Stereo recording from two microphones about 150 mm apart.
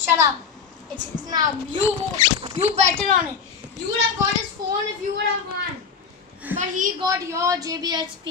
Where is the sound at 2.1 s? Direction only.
30° right (ahead or behind).